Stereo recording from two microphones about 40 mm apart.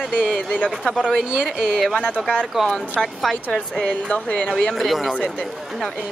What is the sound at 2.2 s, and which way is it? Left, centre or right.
Speech, centre.